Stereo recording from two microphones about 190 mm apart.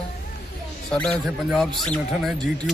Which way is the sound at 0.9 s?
5° left (ahead or behind).